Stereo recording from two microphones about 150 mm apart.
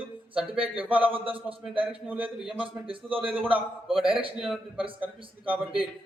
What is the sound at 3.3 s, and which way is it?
Speech, 10° right (ahead or behind).